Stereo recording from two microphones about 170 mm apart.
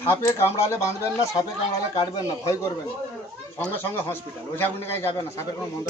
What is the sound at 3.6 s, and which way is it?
A man's voice, 10° left (ahead or behind).